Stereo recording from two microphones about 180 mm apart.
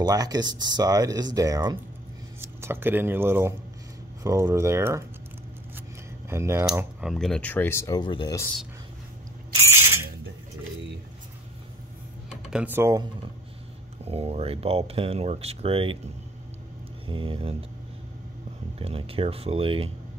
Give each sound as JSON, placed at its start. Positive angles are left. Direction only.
{"t": 0.0, "sound": "speech", "side_deg": -20}
{"t": 6.3, "sound": "speech", "side_deg": -15}
{"t": 9.7, "sound": "a sound", "side_deg": -15}
{"t": 12.4, "sound": "speech", "side_deg": -5}
{"t": 14.0, "sound": "speech", "side_deg": -35}
{"t": 17.1, "sound": "speech", "side_deg": -30}
{"t": 18.8, "sound": "speech", "side_deg": -30}